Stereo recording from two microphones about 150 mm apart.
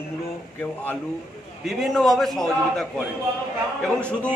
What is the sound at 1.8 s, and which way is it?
Chant, centre (ahead or behind).